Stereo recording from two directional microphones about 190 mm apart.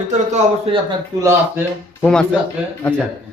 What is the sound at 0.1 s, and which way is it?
Speech, 35° right (ahead or behind).